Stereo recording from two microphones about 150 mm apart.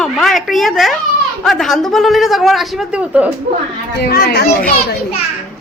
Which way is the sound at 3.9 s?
90° left.